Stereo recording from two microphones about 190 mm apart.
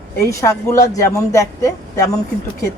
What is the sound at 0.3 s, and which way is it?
Speech, 15° left (ahead or behind).